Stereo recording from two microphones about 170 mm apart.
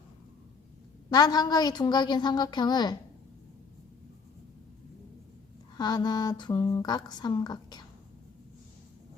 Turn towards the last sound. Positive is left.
turn(degrees=25)  # may be behind; listen again after turning